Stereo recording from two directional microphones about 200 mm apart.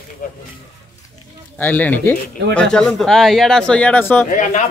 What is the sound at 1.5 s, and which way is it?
Speech, 10° left (ahead or behind).